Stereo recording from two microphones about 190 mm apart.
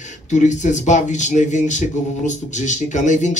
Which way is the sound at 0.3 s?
40° left (ahead or behind).